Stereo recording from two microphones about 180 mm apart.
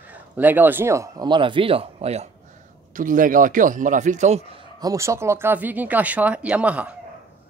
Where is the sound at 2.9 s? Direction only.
45° right (ahead or behind).